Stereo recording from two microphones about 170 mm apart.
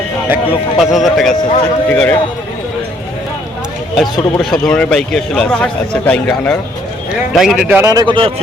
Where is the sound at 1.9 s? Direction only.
10° left (ahead or behind).